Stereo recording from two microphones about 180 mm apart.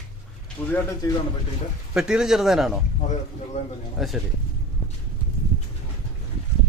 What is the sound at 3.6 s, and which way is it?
Speech, 40° left (ahead or behind).